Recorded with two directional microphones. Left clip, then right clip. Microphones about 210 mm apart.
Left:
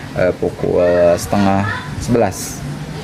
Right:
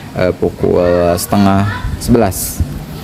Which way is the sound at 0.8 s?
50° right (ahead or behind).